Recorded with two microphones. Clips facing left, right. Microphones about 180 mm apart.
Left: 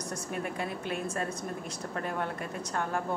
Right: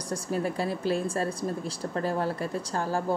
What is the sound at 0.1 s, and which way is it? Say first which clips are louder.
Speech: right 8 dB; 35° right (ahead or behind).